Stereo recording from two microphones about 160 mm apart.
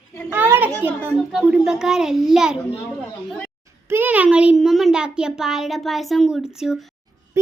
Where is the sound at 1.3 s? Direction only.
5° right (ahead or behind).